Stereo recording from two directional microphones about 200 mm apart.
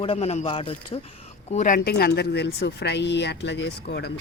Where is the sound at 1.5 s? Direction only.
40° left (ahead or behind).